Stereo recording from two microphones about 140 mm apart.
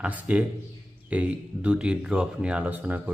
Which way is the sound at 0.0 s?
10° right (ahead or behind).